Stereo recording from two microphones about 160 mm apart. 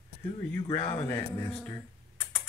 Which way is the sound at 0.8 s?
35° left (ahead or behind).